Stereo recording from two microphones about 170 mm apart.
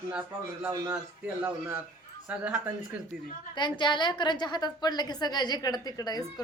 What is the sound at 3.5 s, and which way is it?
A woman's voice, 25° left (ahead or behind).